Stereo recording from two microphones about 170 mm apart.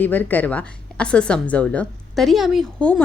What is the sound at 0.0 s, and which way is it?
A woman's voice, 10° left (ahead or behind).